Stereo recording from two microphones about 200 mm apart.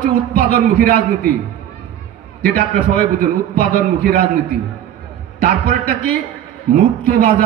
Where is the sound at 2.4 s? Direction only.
45° right (ahead or behind).